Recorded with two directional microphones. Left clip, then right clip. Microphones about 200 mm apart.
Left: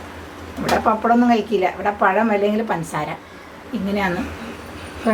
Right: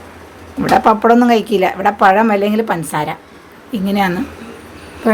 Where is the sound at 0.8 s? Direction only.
60° right (ahead or behind).